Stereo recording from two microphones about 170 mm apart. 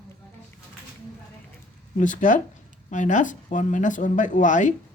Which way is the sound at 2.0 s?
50° left (ahead or behind).